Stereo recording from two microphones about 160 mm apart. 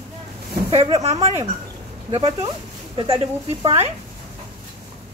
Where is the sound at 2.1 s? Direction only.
35° right (ahead or behind).